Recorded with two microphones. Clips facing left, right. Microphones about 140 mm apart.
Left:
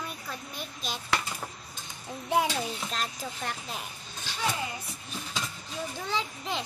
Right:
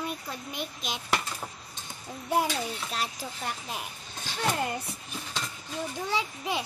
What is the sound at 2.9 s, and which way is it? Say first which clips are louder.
Speech: right 1 dB; 10° right (ahead or behind).